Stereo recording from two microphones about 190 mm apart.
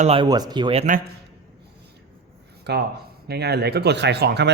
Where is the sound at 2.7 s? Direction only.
60° right (ahead or behind).